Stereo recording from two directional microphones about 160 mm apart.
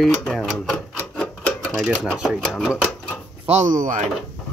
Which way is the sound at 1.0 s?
5° left (ahead or behind).